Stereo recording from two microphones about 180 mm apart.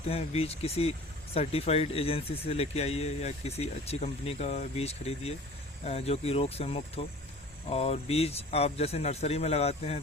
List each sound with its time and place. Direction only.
0.1 s speech: 35° left (ahead or behind)